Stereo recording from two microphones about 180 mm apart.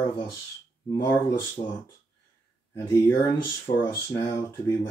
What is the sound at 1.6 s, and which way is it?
Speech, 40° left (ahead or behind).